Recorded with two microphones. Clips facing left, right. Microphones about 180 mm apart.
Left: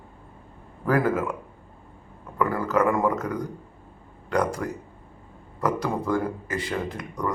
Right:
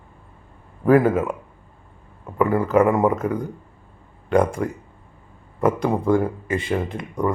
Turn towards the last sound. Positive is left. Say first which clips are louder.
# right 5 dB
turn(degrees=-25)  # may be behind; listen again after turning